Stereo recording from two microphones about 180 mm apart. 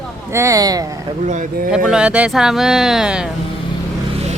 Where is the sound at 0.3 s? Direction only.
15° right (ahead or behind).